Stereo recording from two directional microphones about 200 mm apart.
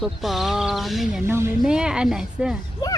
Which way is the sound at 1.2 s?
10° right (ahead or behind).